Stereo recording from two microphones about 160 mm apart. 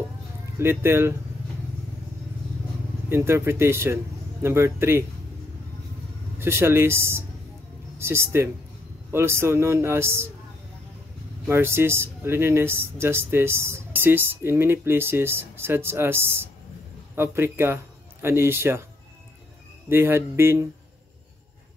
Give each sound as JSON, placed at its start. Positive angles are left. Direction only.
{"t": 0.6, "sound": "speech", "side_deg": -15}
{"t": 3.1, "sound": "speech", "side_deg": -15}
{"t": 6.4, "sound": "speech", "side_deg": -15}
{"t": 11.4, "sound": "speech", "side_deg": -15}
{"t": 19.9, "sound": "speech", "side_deg": -15}